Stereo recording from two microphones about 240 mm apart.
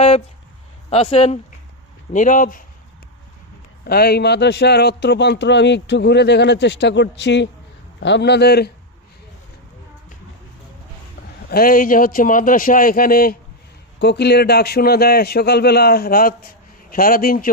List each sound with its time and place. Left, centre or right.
0.9 s a man's voice: left
3.8 s a man's voice: left
11.4 s a man's voice: left